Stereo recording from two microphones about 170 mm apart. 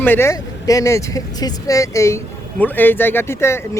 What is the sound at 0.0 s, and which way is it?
Speech, 15° left (ahead or behind).